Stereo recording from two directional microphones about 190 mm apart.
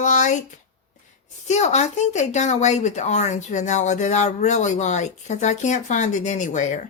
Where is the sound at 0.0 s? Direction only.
40° left (ahead or behind).